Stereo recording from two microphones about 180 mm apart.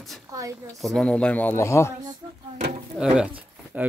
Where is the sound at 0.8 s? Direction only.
Centre (ahead or behind).